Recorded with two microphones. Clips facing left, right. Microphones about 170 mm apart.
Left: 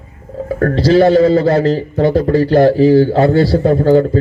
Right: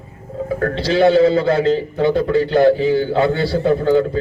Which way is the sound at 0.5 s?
40° left (ahead or behind).